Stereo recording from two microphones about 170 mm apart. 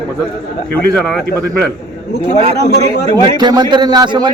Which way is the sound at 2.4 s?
40° right (ahead or behind).